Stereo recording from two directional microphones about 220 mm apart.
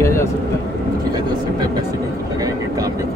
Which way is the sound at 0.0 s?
10° left (ahead or behind).